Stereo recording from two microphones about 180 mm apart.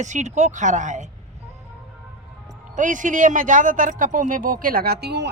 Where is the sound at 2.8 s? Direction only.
45° right (ahead or behind); by 5.3 s 70° right (ahead or behind).